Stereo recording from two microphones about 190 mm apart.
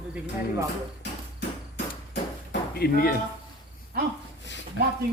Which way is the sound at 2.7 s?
50° left (ahead or behind).